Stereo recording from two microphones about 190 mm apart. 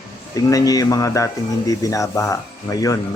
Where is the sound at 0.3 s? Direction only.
20° left (ahead or behind).